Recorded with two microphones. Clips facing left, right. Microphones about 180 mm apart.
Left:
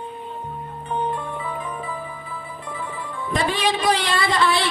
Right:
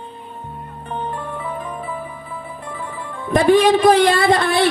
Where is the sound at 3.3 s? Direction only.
55° right (ahead or behind).